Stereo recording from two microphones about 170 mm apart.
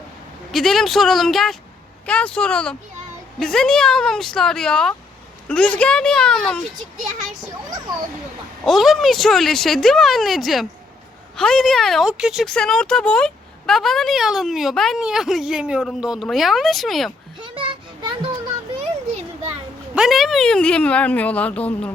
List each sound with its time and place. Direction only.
0.5 s speech: centre (ahead or behind)
8.6 s speech: centre (ahead or behind)
17.4 s children playing: 30° right (ahead or behind)
20.0 s speech: centre (ahead or behind)